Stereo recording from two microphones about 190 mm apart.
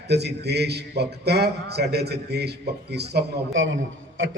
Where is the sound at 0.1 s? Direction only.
60° right (ahead or behind).